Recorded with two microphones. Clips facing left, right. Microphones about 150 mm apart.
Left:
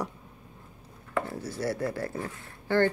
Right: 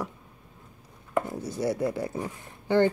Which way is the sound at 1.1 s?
15° right (ahead or behind).